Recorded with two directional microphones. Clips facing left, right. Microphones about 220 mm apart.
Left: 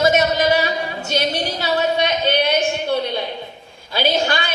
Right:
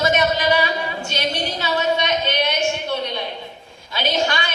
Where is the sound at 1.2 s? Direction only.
35° left (ahead or behind).